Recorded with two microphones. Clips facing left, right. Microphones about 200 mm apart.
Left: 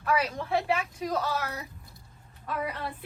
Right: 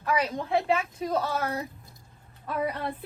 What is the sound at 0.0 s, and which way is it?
A woman's voice, 15° right (ahead or behind).